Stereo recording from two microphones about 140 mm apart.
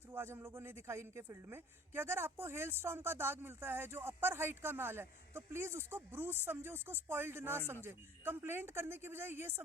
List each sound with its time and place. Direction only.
0.1 s speech: 15° right (ahead or behind)